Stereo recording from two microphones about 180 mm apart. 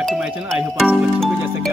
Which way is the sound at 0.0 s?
Centre (ahead or behind).